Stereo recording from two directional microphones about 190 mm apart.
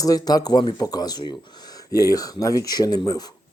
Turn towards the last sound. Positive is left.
turn(degrees=20)  # may be behind; listen again after turning